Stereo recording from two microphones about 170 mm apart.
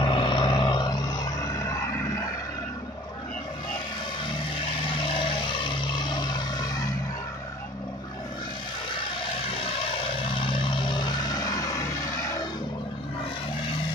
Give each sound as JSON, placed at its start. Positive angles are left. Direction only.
{"t": 0.0, "sound": "vehicle", "side_deg": 30}
{"t": 4.8, "sound": "vehicle", "side_deg": 30}
{"t": 10.3, "sound": "vehicle", "side_deg": 30}